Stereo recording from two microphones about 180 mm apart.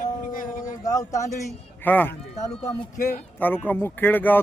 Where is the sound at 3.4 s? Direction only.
10° left (ahead or behind).